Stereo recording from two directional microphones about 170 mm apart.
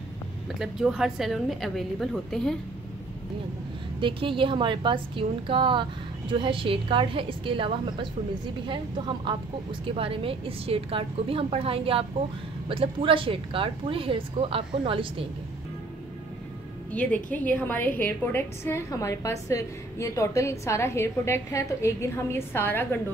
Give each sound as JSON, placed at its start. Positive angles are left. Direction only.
{"t": 0.6, "sound": "a woman's voice", "side_deg": -5}
{"t": 4.0, "sound": "a woman's voice", "side_deg": -30}
{"t": 16.9, "sound": "a woman's voice", "side_deg": 10}